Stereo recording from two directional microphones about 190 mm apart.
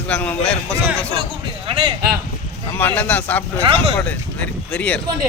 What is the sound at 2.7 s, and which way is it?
Speech, 10° left (ahead or behind).